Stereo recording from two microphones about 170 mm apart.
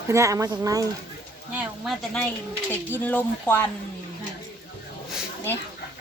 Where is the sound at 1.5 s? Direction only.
Centre (ahead or behind).